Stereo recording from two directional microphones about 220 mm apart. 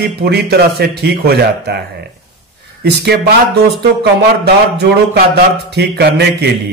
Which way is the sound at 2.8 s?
45° right (ahead or behind).